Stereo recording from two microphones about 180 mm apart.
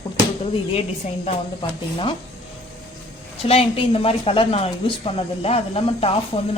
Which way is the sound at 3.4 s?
30° left (ahead or behind).